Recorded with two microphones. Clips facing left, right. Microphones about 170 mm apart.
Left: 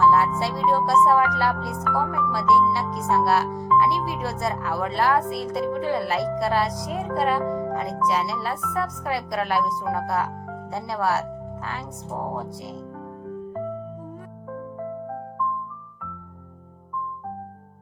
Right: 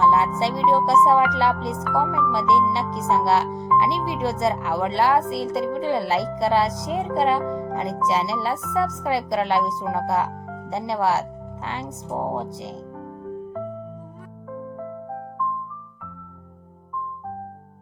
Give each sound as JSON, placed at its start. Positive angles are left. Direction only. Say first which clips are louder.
{"t": 0.0, "sound": "music", "louder": "even", "side_deg": -20}
{"t": 0.3, "sound": "speech", "louder": "right 3 dB", "side_deg": -20}
{"t": 7.5, "sound": "music", "louder": "even", "side_deg": -25}
{"t": 8.0, "sound": "speech", "louder": "right 2 dB", "side_deg": -25}